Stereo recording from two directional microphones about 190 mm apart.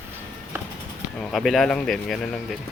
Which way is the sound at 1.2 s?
Centre (ahead or behind).